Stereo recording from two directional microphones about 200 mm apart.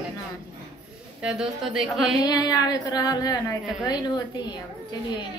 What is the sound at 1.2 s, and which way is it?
A woman's voice, 5° right (ahead or behind).